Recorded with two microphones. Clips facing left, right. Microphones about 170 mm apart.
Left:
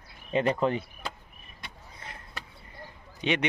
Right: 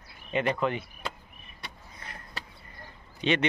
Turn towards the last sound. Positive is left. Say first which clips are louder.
# right 2 dB
turn(degrees=15)  # may be behind; listen again after turning